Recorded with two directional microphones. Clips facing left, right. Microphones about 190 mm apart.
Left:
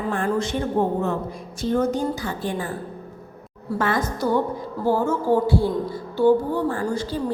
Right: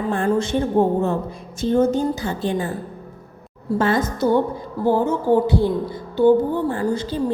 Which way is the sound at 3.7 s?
25° right (ahead or behind).